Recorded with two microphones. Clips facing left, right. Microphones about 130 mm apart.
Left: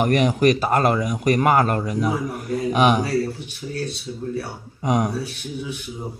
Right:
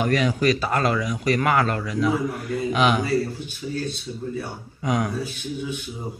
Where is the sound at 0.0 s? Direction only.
40° left (ahead or behind).